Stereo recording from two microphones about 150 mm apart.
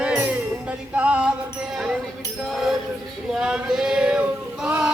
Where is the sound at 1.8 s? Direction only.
5° right (ahead or behind).